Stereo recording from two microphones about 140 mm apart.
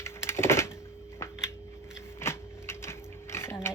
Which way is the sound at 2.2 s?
20° left (ahead or behind).